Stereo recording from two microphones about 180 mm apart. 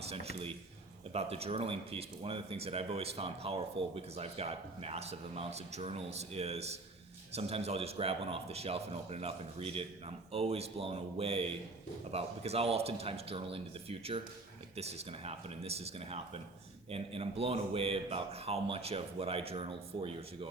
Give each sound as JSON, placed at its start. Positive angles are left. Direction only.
{"t": 0.0, "sound": "a man's voice", "side_deg": -35}